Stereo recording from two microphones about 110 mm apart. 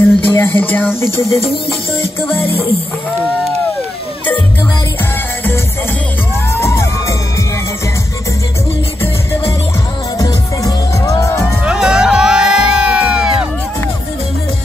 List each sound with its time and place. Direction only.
0.0 s a sound: 20° left (ahead or behind)
2.2 s music: 20° left (ahead or behind)
6.5 s music: 25° left (ahead or behind)
10.1 s music: 30° left (ahead or behind)
11.6 s music: 10° right (ahead or behind)